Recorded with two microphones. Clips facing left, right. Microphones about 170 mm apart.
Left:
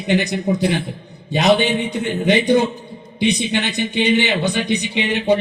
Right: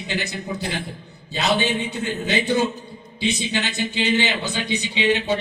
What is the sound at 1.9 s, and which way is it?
Speech, 15° left (ahead or behind).